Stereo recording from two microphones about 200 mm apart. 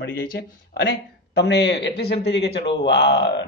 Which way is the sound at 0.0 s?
45° left (ahead or behind).